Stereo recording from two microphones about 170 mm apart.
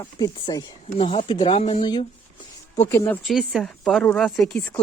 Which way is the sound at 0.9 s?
35° left (ahead or behind).